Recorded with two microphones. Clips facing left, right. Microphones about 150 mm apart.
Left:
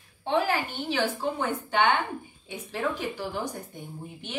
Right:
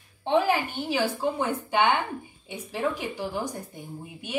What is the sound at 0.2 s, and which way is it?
A woman's voice, 15° right (ahead or behind).